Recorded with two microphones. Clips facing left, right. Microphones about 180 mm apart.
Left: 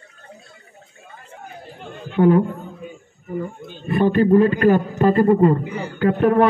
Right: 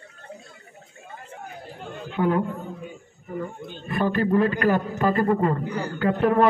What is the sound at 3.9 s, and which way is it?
A man's voice, 25° left (ahead or behind).